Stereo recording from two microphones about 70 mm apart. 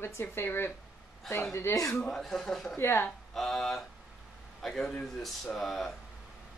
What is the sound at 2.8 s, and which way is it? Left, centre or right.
Speech, left.